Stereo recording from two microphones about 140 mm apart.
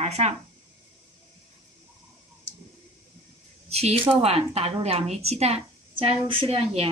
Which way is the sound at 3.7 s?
50° right (ahead or behind).